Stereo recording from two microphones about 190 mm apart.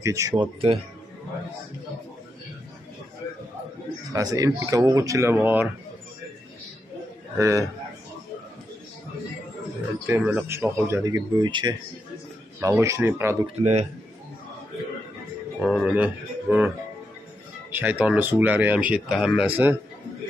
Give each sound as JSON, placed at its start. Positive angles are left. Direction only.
{"t": 0.0, "sound": "speech", "side_deg": -15}
{"t": 4.1, "sound": "speech", "side_deg": -20}
{"t": 7.3, "sound": "speech", "side_deg": -15}
{"t": 10.0, "sound": "speech", "side_deg": -10}
{"t": 13.6, "sound": "speech", "side_deg": -35}
{"t": 15.6, "sound": "speech", "side_deg": -5}